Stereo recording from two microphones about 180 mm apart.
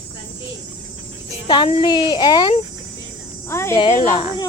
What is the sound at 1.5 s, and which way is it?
Speech, 30° left (ahead or behind).